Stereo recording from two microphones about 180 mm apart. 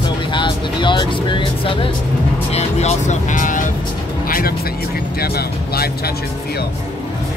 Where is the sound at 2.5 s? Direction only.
35° left (ahead or behind).